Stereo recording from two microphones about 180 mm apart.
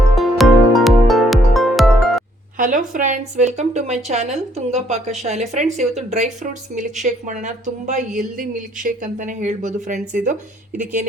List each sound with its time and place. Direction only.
0.2 s music: centre (ahead or behind)
2.6 s a woman's voice: 45° right (ahead or behind)